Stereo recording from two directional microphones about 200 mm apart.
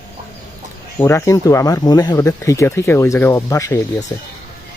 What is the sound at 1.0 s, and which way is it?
Speech, 15° left (ahead or behind).